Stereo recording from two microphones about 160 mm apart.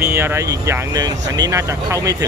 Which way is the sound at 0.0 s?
15° right (ahead or behind).